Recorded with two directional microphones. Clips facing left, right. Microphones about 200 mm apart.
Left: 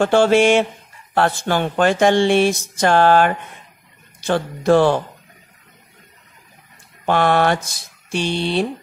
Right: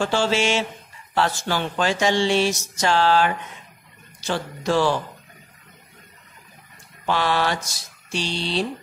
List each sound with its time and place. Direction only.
0.0 s speech: 55° left (ahead or behind)
7.1 s speech: 55° left (ahead or behind)